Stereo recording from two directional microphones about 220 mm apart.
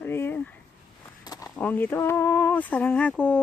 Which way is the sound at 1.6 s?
10° left (ahead or behind).